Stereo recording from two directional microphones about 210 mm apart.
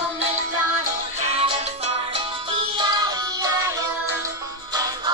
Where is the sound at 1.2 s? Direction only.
25° right (ahead or behind).